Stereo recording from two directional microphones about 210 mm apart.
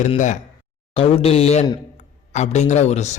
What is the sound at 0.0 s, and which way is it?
A man's voice, 35° left (ahead or behind).